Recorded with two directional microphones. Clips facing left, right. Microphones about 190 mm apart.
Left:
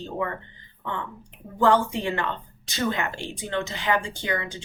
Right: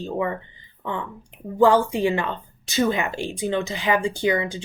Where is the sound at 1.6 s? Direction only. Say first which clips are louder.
Right 4 dB; 10° right (ahead or behind).